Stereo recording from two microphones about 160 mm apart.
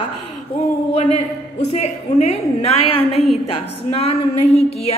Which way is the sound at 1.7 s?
45° left (ahead or behind).